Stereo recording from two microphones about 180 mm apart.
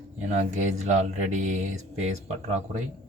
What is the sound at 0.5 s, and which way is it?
Mantra, 40° right (ahead or behind).